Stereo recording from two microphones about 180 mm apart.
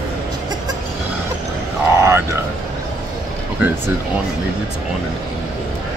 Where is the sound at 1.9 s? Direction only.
15° right (ahead or behind).